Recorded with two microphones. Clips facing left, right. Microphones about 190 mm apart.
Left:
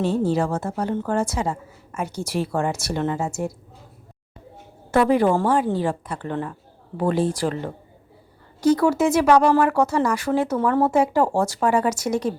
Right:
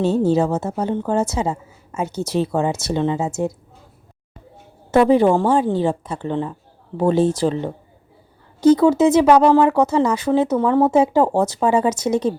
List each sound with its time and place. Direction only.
0.0 s speech: 25° right (ahead or behind)
4.9 s speech: 25° right (ahead or behind)